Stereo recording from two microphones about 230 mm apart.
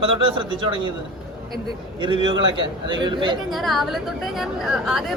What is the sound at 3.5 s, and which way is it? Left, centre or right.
A woman's voice, centre.